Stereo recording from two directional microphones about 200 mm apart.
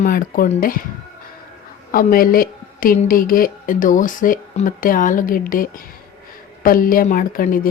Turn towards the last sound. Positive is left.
turn(degrees=45)  # may be behind; listen again after turning